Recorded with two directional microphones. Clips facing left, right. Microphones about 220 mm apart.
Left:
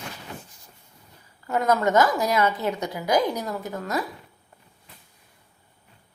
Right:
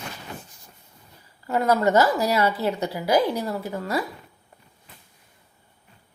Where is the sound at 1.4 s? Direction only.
10° right (ahead or behind).